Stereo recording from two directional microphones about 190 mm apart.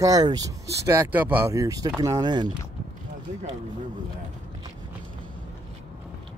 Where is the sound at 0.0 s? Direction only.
20° right (ahead or behind).